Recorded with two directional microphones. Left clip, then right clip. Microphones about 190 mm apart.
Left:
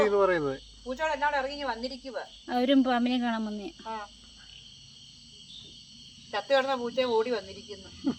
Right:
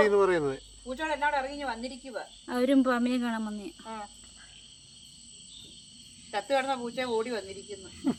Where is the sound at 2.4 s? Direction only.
15° left (ahead or behind).